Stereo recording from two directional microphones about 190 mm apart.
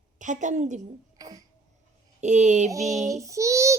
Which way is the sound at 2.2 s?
40° right (ahead or behind).